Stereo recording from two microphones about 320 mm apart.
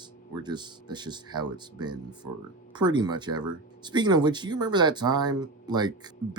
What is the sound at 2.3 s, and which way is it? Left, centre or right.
Speech, right.